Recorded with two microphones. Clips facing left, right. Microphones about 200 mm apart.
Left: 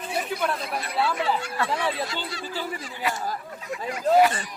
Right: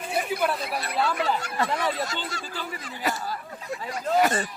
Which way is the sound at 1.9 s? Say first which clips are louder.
Even; 45° right (ahead or behind).